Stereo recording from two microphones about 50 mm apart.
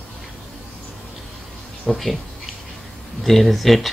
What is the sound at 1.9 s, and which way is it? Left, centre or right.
Speech, centre.